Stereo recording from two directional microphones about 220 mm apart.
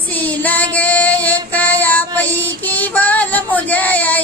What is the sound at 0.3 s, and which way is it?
Female singing, 5° left (ahead or behind).